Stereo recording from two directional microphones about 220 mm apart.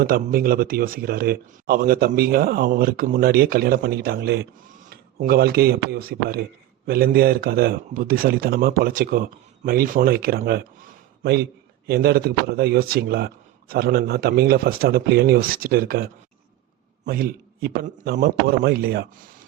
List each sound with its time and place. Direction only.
0.0 s a man's voice: 40° right (ahead or behind)
17.1 s speech: 45° right (ahead or behind)